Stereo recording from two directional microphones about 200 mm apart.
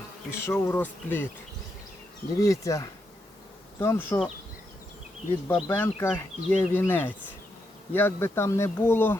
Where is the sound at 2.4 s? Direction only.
15° left (ahead or behind).